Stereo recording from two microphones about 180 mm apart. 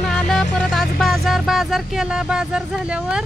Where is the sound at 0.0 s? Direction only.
5° left (ahead or behind).